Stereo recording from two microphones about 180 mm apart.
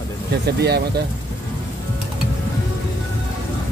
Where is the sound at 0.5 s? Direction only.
65° right (ahead or behind).